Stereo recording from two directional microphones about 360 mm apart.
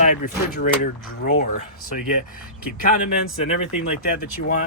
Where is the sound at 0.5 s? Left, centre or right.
Left.